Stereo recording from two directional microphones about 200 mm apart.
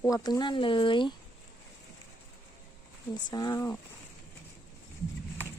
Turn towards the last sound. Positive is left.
turn(degrees=15)  # may be behind; listen again after turning